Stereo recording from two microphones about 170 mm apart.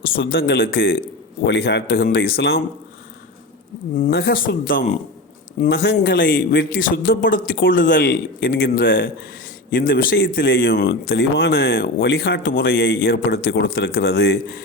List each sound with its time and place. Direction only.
0.0 s a man's voice: 65° left (ahead or behind)
1.5 s speech: 80° left
4.1 s a man's voice: 65° left (ahead or behind)
5.6 s a man's voice: 75° left (ahead or behind); by 8.0 s 55° left (ahead or behind)
8.0 s speech: 70° left (ahead or behind)
9.7 s speech: 60° left (ahead or behind); by 14.6 s 80° left